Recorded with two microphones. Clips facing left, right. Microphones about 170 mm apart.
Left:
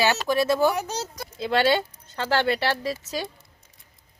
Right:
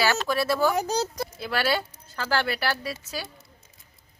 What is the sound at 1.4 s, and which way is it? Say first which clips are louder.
A woman's voice: left 6 dB; 25° left (ahead or behind).